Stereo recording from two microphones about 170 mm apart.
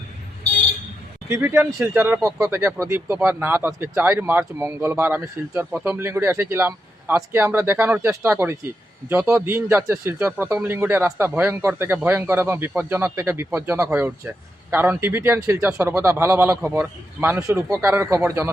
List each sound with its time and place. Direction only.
1.3 s speech: 15° right (ahead or behind)